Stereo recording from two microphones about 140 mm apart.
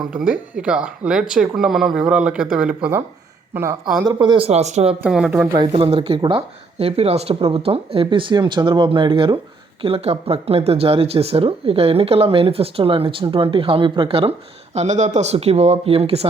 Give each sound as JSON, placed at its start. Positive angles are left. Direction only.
{"t": 0.0, "sound": "speech", "side_deg": -5}
{"t": 3.5, "sound": "speech", "side_deg": -20}
{"t": 4.0, "sound": "speech", "side_deg": -35}
{"t": 5.0, "sound": "speech", "side_deg": -5}
{"t": 5.5, "sound": "speech", "side_deg": -40}